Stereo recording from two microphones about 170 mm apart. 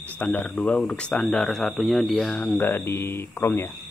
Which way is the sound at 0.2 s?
10° left (ahead or behind).